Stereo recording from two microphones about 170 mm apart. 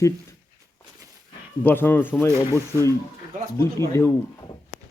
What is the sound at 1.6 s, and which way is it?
Speech, 10° left (ahead or behind).